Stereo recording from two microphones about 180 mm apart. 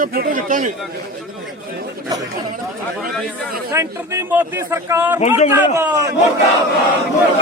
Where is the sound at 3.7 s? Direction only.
15° right (ahead or behind).